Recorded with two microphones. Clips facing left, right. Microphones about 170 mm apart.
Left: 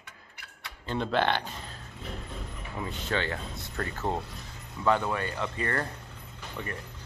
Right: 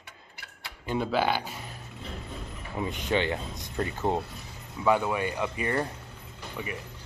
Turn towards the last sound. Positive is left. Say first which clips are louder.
# right 1 dB
turn(degrees=-10)  # may be behind; listen again after turning